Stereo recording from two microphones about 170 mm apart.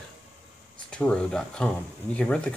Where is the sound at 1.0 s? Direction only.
5° left (ahead or behind).